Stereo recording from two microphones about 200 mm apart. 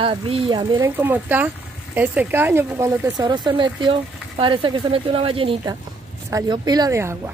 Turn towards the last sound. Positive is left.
turn(degrees=-15)  # may be behind; listen again after turning